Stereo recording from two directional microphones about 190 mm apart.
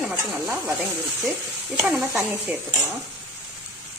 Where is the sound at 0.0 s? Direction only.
10° right (ahead or behind).